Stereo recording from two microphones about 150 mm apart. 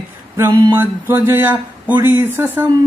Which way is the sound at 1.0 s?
15° right (ahead or behind).